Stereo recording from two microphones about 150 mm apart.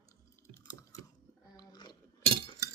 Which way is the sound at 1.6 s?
30° left (ahead or behind).